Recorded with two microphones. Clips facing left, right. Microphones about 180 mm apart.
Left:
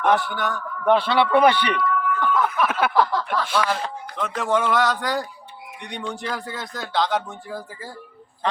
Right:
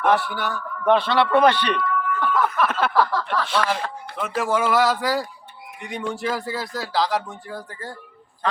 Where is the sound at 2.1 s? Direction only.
Centre (ahead or behind).